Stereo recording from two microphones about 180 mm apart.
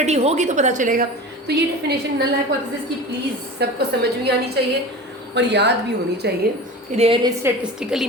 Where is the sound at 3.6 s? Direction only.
65° right (ahead or behind).